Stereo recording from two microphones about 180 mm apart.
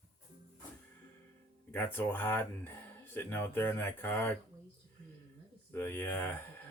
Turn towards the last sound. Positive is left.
turn(degrees=10)  # may be behind; listen again after turning